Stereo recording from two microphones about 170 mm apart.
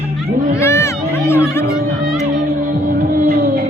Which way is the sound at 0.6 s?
15° left (ahead or behind).